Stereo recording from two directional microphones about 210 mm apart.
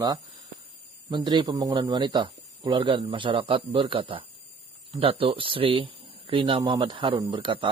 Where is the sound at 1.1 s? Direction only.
20° right (ahead or behind).